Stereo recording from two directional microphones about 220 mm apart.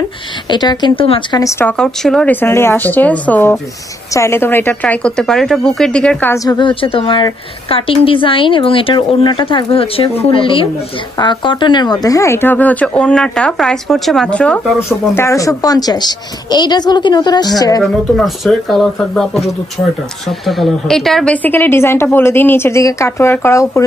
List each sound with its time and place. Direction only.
0.5 s a woman's voice: 20° left (ahead or behind)
18.1 s speech: centre (ahead or behind)